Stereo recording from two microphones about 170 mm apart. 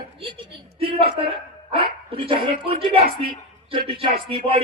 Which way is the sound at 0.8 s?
35° right (ahead or behind).